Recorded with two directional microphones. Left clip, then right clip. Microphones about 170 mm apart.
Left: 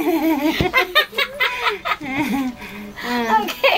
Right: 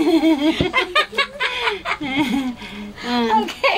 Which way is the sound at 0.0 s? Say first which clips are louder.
Right 2 dB; 25° right (ahead or behind).